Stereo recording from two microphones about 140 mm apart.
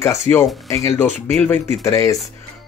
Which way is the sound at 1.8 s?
25° left (ahead or behind).